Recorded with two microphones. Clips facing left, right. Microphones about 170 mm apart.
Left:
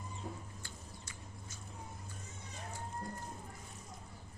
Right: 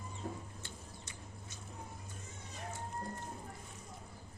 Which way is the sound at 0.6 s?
25° right (ahead or behind).